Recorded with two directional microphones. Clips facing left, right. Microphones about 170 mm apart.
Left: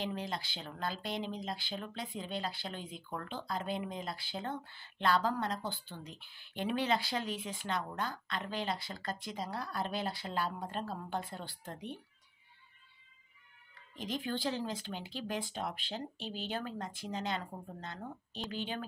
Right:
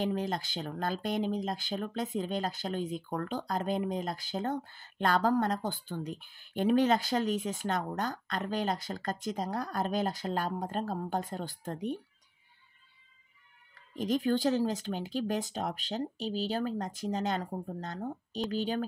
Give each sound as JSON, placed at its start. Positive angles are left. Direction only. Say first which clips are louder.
{"t": 0.0, "sound": "speech", "louder": "right 6 dB", "side_deg": -45}
{"t": 13.9, "sound": "speech", "louder": "right 9 dB", "side_deg": -45}